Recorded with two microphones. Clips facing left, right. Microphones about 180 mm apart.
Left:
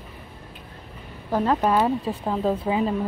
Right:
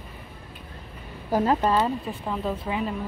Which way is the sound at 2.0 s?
35° left (ahead or behind).